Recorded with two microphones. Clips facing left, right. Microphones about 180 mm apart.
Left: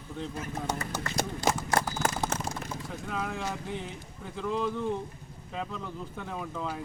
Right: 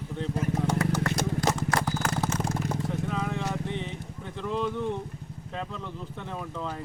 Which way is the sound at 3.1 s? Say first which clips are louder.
Right 3 dB; centre (ahead or behind).